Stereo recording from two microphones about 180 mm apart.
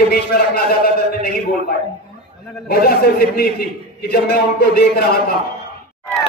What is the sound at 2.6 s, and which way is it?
A man's voice, 60° left (ahead or behind).